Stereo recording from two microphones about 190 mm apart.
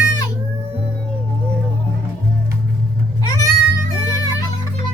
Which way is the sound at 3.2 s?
20° left (ahead or behind).